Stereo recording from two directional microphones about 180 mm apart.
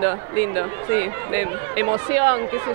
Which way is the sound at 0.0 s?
20° right (ahead or behind).